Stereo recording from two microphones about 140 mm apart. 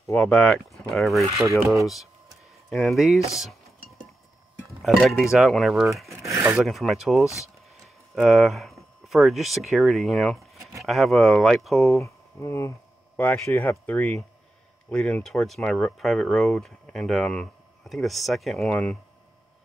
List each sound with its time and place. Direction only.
0.1 s speech: 5° left (ahead or behind)
1.9 s a sound: centre (ahead or behind)
4.8 s speech: centre (ahead or behind)
6.0 s a sound: 20° right (ahead or behind)
6.5 s speech: centre (ahead or behind)
12.0 s speech: 20° left (ahead or behind)